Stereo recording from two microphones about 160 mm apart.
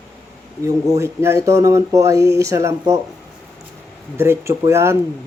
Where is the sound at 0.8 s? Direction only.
20° right (ahead or behind).